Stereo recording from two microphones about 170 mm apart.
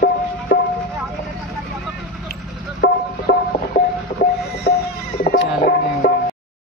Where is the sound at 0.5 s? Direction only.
50° left (ahead or behind).